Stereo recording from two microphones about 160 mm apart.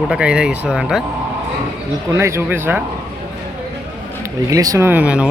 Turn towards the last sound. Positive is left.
turn(degrees=-5)  # may be behind; listen again after turning